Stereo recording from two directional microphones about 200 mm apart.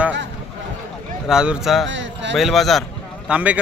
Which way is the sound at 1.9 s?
65° right (ahead or behind).